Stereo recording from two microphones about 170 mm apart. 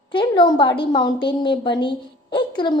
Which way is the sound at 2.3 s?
30° left (ahead or behind).